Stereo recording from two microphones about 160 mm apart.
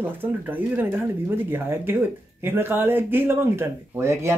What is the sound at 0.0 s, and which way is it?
Speech, 10° right (ahead or behind).